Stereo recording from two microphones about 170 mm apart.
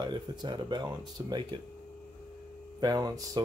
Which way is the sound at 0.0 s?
25° right (ahead or behind).